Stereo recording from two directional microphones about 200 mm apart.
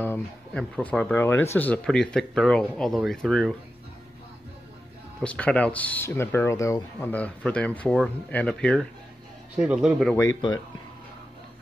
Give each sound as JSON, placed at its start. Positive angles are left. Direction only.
{"t": 0.0, "sound": "speech", "side_deg": 5}
{"t": 5.2, "sound": "speech", "side_deg": 5}
{"t": 10.1, "sound": "speech", "side_deg": 15}